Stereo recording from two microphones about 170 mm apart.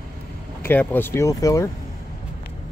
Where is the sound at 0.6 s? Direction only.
10° left (ahead or behind).